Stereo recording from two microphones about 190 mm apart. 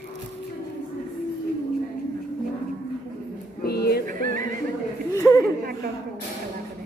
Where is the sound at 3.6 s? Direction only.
55° left (ahead or behind).